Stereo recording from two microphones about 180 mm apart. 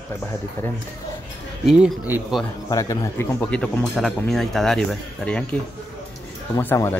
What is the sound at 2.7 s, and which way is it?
Speech, 20° left (ahead or behind).